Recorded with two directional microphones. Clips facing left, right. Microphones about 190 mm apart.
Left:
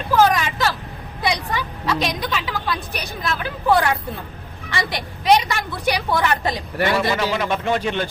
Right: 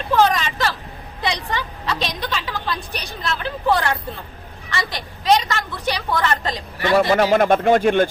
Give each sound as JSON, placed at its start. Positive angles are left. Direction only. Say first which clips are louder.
{"t": 0.2, "sound": "vehicle", "louder": "left 1 dB", "side_deg": 5}
{"t": 1.2, "sound": "a woman's voice", "louder": "left 1 dB", "side_deg": 10}
{"t": 7.1, "sound": "speech", "louder": "right 6 dB", "side_deg": -60}